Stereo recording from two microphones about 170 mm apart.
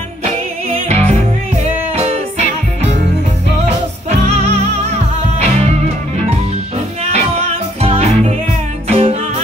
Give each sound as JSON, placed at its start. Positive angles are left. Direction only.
{"t": 0.2, "sound": "music", "side_deg": -40}
{"t": 7.1, "sound": "music", "side_deg": -40}